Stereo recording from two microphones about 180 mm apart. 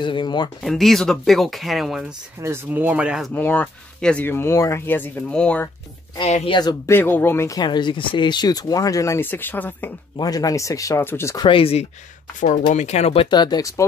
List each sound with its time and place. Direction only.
0.0 s speech: 25° left (ahead or behind)
0.7 s speech: centre (ahead or behind)
3.3 s speech: 10° left (ahead or behind)
6.1 s speech: 35° left (ahead or behind); by 9.9 s 10° left (ahead or behind)
10.1 s speech: 20° left (ahead or behind)
11.4 s speech: 30° left (ahead or behind)